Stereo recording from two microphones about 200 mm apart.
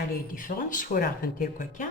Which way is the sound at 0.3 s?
40° left (ahead or behind).